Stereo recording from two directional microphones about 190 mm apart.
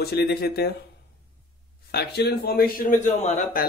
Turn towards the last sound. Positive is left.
turn(degrees=40)  # may be behind; listen again after turning